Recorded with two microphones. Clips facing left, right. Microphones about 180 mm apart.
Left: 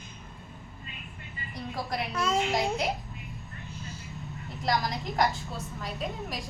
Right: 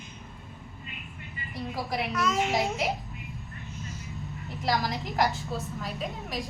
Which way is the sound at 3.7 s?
30° left (ahead or behind).